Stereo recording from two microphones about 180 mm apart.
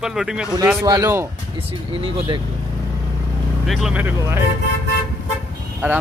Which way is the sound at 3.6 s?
Centre (ahead or behind).